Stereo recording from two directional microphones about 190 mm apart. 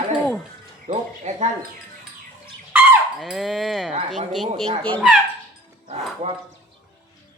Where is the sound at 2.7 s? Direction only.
5° right (ahead or behind).